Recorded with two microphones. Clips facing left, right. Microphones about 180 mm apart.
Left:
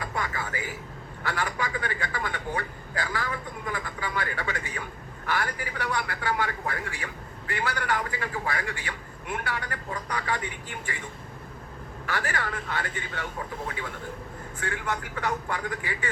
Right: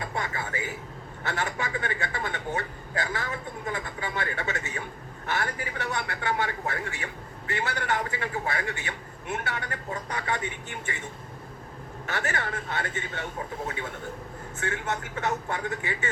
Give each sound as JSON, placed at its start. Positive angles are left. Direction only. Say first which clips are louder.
{"t": 0.0, "sound": "a sound", "louder": "even", "side_deg": -25}
{"t": 1.2, "sound": "a man's voice", "louder": "left 1 dB", "side_deg": -25}
{"t": 12.0, "sound": "a man's voice", "louder": "even", "side_deg": -25}